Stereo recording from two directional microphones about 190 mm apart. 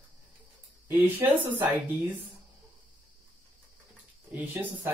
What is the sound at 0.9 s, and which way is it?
Speech, 10° right (ahead or behind).